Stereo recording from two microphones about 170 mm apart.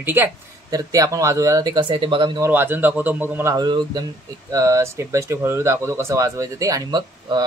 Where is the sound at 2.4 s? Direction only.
10° right (ahead or behind).